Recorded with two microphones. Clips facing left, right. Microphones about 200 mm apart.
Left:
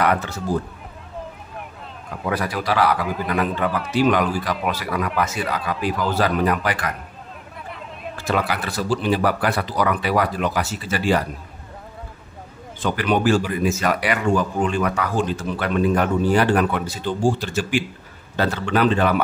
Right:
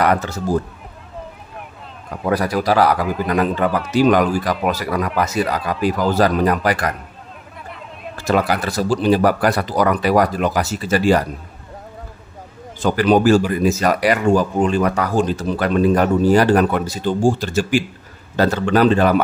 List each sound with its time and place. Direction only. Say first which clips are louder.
0.0 s a man's voice: right 3 dB; 40° right (ahead or behind)
2.2 s a man's voice: right 6 dB; 40° right (ahead or behind)
8.2 s a man's voice: right 5 dB; 40° right (ahead or behind)
12.8 s a man's voice: right 6 dB; 35° right (ahead or behind)